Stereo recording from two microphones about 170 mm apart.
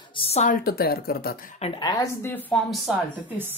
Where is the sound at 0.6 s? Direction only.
65° left (ahead or behind).